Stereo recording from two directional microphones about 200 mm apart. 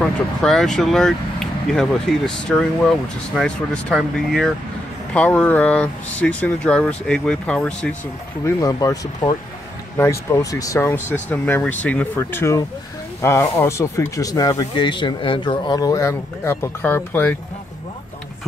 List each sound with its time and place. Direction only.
0.0 s speech: centre (ahead or behind)
8.5 s speech: 20° left (ahead or behind)